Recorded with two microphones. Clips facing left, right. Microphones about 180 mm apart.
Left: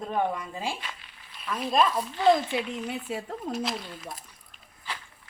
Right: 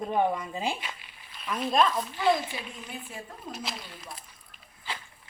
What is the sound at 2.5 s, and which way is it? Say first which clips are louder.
Speech: left 9 dB; 70° left (ahead or behind).